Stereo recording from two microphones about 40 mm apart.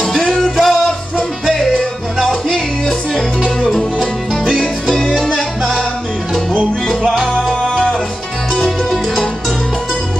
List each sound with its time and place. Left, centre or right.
0.1 s music: centre
3.6 s music: centre
5.2 s salsa music: centre
7.6 s music: centre
8.5 s music: centre